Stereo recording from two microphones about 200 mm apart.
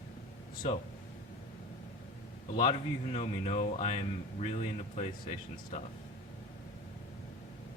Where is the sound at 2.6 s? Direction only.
25° left (ahead or behind).